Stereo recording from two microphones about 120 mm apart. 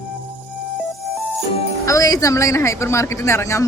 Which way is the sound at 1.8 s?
25° left (ahead or behind).